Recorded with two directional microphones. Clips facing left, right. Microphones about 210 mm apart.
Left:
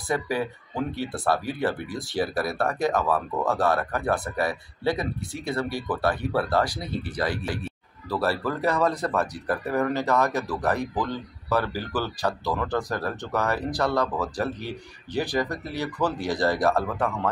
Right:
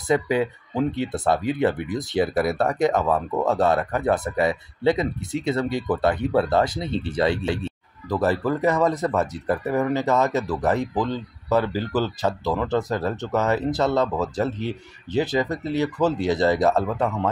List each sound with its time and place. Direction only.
0.1 s speech: 20° right (ahead or behind)